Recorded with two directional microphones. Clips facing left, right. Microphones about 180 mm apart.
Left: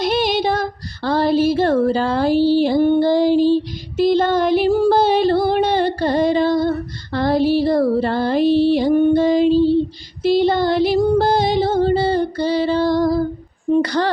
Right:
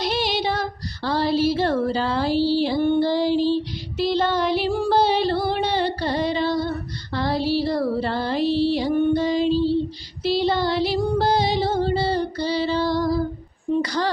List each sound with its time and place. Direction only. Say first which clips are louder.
0.0 s female singing: left 6 dB; 50° left (ahead or behind)
10.2 s music: left 6 dB; 50° left (ahead or behind)
13.7 s a sound: left 6 dB; 60° left (ahead or behind)